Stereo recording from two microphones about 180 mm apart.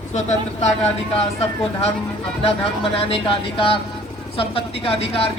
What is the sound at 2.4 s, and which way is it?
Speech, 30° left (ahead or behind).